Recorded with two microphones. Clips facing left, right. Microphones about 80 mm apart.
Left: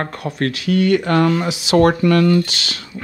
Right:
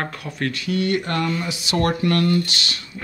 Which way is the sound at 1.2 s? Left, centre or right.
Left.